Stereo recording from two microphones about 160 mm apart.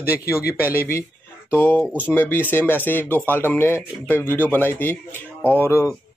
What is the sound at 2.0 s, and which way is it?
Speech, 15° left (ahead or behind).